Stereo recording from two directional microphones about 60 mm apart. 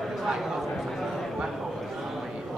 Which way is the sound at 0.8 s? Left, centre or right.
Centre.